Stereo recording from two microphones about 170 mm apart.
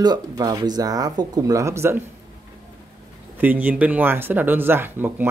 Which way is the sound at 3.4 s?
10° right (ahead or behind).